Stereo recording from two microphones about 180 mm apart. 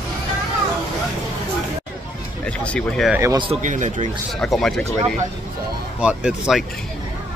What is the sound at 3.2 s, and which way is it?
Speech, 15° right (ahead or behind).